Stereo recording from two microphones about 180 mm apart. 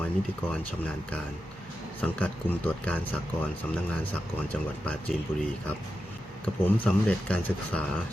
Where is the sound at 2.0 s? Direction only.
10° left (ahead or behind).